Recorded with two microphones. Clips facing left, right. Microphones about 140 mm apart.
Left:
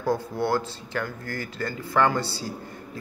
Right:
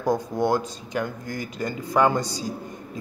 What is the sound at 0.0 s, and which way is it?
A man's voice, 15° right (ahead or behind).